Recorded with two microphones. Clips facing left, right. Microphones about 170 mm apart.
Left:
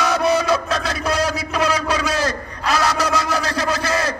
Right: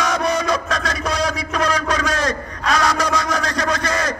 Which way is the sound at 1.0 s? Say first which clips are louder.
Left 1 dB; 5° left (ahead or behind).